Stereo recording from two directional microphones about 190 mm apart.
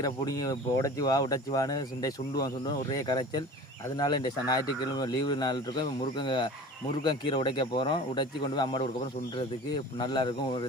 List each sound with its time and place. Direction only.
0.0 s speech: 20° left (ahead or behind)